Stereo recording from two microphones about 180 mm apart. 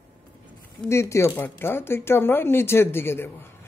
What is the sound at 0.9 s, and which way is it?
Speech, 15° left (ahead or behind).